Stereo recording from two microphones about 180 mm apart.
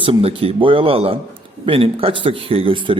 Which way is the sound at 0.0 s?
30° right (ahead or behind).